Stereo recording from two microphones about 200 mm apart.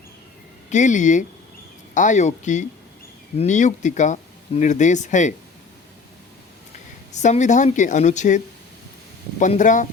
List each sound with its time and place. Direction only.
0.7 s speech: 40° left (ahead or behind)
7.1 s speech: 35° left (ahead or behind)
9.4 s speech: 40° left (ahead or behind)